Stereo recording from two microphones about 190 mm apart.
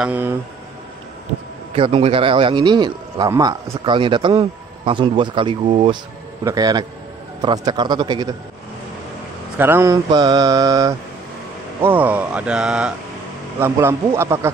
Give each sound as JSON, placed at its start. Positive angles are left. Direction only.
{"t": 0.0, "sound": "mantra", "side_deg": -10}
{"t": 1.8, "sound": "a man's voice", "side_deg": -30}
{"t": 9.6, "sound": "mantra", "side_deg": -10}